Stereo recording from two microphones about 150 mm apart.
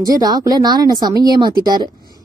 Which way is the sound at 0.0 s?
25° right (ahead or behind).